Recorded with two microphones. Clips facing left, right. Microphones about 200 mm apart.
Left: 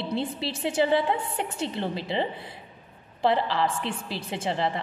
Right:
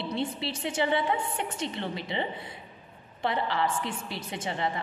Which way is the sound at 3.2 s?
30° left (ahead or behind).